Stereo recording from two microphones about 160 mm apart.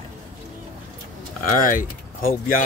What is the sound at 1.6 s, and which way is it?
Speech, 60° left (ahead or behind).